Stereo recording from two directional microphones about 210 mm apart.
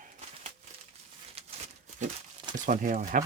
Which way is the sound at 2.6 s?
40° right (ahead or behind).